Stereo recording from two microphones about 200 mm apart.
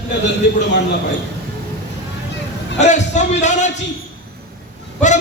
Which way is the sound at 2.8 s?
35° left (ahead or behind).